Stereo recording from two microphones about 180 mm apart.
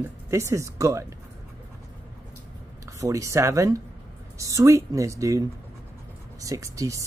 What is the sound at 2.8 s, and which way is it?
Speech, 15° right (ahead or behind).